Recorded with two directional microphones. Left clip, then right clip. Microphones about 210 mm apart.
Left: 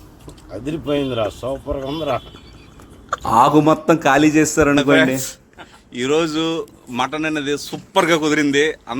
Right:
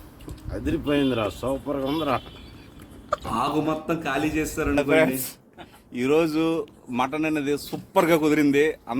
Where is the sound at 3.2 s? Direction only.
40° left (ahead or behind).